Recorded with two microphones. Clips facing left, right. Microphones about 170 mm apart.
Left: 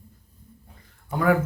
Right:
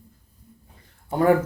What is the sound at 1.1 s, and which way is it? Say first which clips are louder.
Speech: right 3 dB; 30° right (ahead or behind).